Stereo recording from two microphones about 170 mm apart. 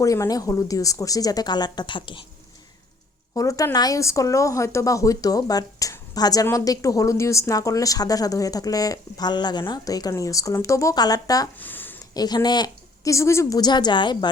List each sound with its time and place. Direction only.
0.0 s a woman's voice: 20° left (ahead or behind)
3.3 s a woman's voice: 20° left (ahead or behind)
11.5 s a sound: 10° left (ahead or behind)
12.1 s a woman's voice: 25° left (ahead or behind)